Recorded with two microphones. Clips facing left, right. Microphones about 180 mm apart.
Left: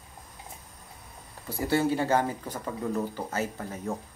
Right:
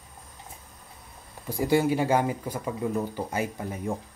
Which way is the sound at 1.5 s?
15° right (ahead or behind).